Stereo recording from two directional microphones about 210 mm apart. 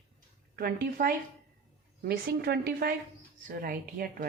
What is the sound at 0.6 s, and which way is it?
A woman's voice, 45° right (ahead or behind).